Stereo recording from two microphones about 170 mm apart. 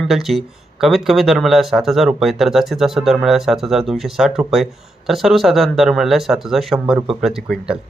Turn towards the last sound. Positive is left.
turn(degrees=0)  # may be behind; listen again after turning